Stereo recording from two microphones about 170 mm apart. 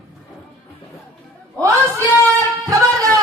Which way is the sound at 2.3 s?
20° right (ahead or behind).